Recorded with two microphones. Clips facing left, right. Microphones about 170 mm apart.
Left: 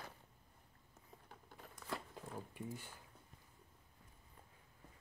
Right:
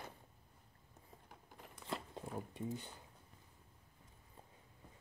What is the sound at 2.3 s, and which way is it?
Speech, 20° right (ahead or behind).